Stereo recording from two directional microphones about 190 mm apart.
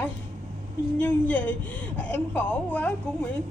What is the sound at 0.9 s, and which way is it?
A woman's voice, 10° left (ahead or behind).